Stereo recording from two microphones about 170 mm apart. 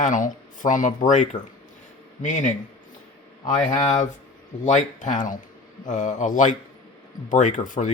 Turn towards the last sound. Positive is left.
turn(degrees=50)  # may be behind; listen again after turning